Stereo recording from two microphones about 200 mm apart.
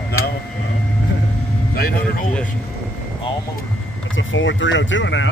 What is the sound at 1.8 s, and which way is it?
Vehicle, 50° left (ahead or behind).